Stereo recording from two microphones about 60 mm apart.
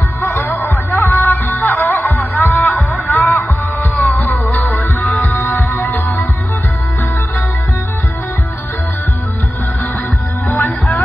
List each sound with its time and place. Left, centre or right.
0.5 s music: left
10.5 s music: left